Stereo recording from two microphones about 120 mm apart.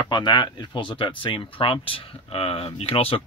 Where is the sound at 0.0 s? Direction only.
35° left (ahead or behind).